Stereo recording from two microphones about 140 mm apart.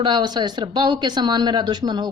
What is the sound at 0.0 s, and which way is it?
Speech, 30° right (ahead or behind).